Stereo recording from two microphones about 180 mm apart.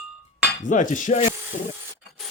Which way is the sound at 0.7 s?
45° left (ahead or behind).